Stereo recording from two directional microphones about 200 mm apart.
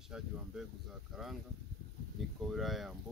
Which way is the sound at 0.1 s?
5° right (ahead or behind).